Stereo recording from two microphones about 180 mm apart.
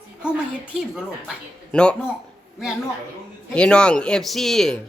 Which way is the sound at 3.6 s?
5° left (ahead or behind).